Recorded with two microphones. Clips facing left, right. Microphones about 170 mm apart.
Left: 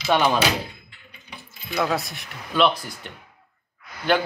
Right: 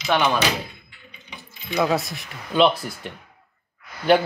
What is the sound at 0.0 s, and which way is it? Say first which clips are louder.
Speech: left 1 dB; 5° left (ahead or behind).